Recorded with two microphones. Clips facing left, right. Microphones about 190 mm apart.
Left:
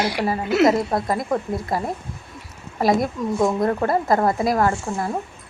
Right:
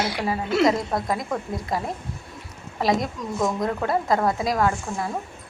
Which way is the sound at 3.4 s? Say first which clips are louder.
Left 4 dB; 30° left (ahead or behind).